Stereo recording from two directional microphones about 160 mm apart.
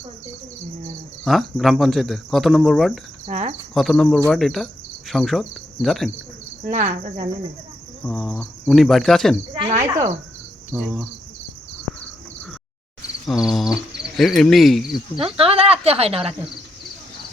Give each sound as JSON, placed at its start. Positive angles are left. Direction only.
{"t": 1.2, "sound": "speech", "side_deg": 0}
{"t": 3.2, "sound": "speech", "side_deg": -50}
{"t": 3.8, "sound": "speech", "side_deg": 0}
{"t": 4.3, "sound": "insect", "side_deg": 0}
{"t": 6.7, "sound": "cricket", "side_deg": -50}
{"t": 8.0, "sound": "speech", "side_deg": 5}
{"t": 9.8, "sound": "cricket", "side_deg": -20}
{"t": 13.2, "sound": "speech", "side_deg": 0}
{"t": 15.2, "sound": "speech", "side_deg": -35}